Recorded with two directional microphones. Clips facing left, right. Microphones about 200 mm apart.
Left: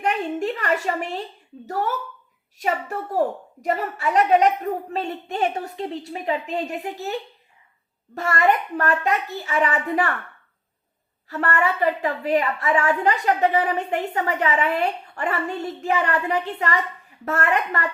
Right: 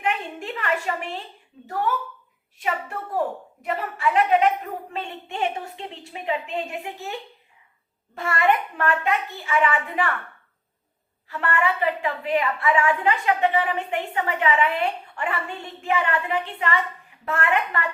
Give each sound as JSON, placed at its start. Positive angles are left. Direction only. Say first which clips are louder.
{"t": 0.0, "sound": "a woman's voice", "louder": "left 5 dB", "side_deg": 40}
{"t": 3.6, "sound": "a woman's voice", "louder": "left 1 dB", "side_deg": 40}
{"t": 11.3, "sound": "a woman's voice", "louder": "left 1 dB", "side_deg": 40}